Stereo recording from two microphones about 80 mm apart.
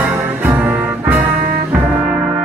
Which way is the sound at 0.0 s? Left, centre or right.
Right.